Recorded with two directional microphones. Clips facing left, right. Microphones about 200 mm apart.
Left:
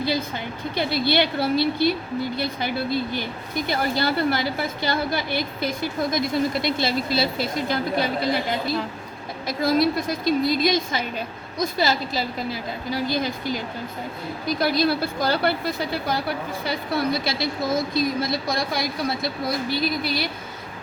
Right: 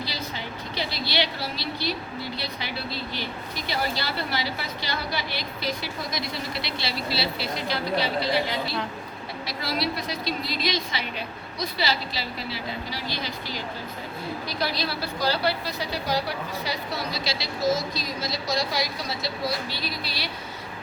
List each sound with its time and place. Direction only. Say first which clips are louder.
0.0 s a woman's voice: left 8 dB; 55° left (ahead or behind)